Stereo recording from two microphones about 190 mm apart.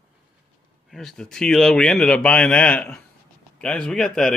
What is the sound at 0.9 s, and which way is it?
Speech, centre (ahead or behind).